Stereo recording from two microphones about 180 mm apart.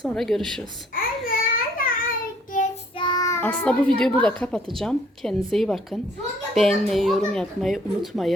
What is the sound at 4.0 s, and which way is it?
A woman's voice, 5° left (ahead or behind).